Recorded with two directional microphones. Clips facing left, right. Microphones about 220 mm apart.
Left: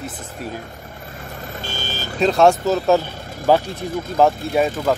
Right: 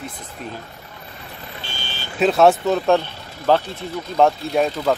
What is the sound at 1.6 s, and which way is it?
Vehicle, 45° left (ahead or behind).